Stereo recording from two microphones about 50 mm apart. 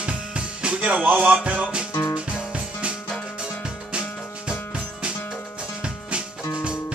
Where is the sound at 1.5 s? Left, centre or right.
Right.